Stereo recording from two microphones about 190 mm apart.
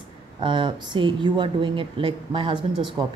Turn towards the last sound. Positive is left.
turn(degrees=-25)  # may be behind; listen again after turning